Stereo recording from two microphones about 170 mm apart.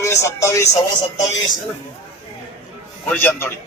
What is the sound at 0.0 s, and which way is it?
Speech, 15° left (ahead or behind).